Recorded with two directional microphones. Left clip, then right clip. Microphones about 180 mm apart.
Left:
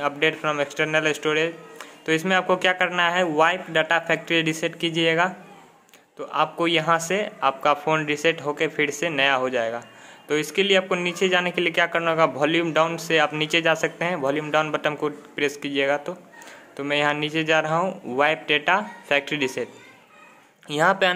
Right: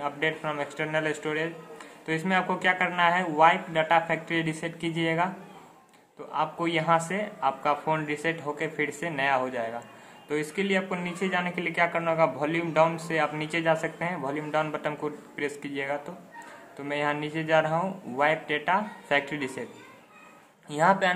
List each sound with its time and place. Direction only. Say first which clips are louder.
0.0 s a man's voice: left 6 dB; 40° left (ahead or behind)
6.3 s a man's voice: left 6 dB; 40° left (ahead or behind)
20.6 s a man's voice: left 3 dB; 40° left (ahead or behind)